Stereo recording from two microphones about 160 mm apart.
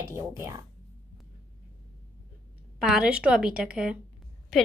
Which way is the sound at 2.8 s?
5° right (ahead or behind).